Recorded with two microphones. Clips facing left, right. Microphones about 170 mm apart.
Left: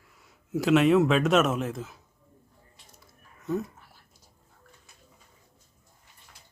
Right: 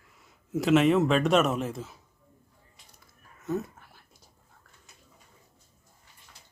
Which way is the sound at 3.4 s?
Centre (ahead or behind).